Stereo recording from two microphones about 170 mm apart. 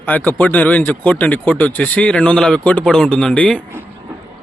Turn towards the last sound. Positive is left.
turn(degrees=5)  # may be behind; listen again after turning